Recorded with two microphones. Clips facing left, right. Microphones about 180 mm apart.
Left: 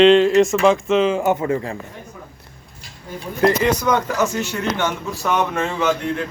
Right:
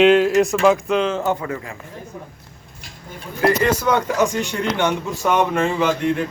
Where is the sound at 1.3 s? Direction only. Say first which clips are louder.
Left 6 dB; 25° left (ahead or behind).